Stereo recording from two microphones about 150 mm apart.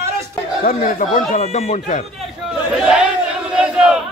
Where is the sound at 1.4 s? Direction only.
45° left (ahead or behind).